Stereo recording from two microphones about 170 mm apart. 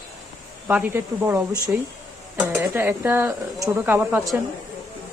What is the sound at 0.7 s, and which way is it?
A woman's voice, 10° right (ahead or behind).